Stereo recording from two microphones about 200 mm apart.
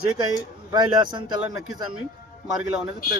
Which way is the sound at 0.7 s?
20° right (ahead or behind).